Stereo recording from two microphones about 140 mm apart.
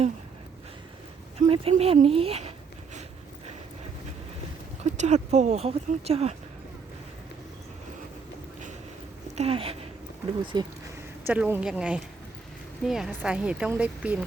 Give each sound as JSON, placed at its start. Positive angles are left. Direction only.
{"t": 1.4, "sound": "speech", "side_deg": -45}
{"t": 4.8, "sound": "speech", "side_deg": -55}
{"t": 9.3, "sound": "speech", "side_deg": -45}
{"t": 11.3, "sound": "speech", "side_deg": -15}